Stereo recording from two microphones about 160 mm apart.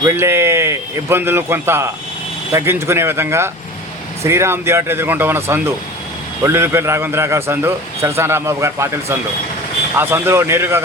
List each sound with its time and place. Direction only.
0.0 s a man's voice: 15° right (ahead or behind)